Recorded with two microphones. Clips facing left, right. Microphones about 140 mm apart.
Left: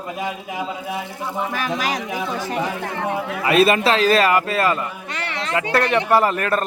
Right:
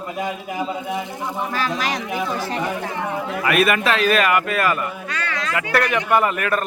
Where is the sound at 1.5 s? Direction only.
15° left (ahead or behind).